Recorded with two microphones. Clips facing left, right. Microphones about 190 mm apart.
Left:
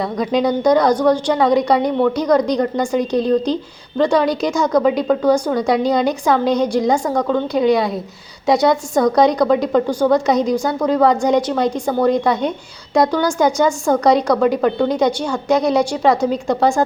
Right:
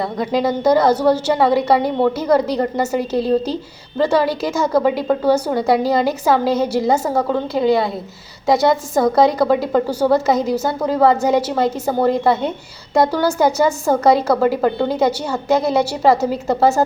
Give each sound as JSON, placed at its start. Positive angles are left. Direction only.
{"t": 0.0, "sound": "a woman's voice", "side_deg": -5}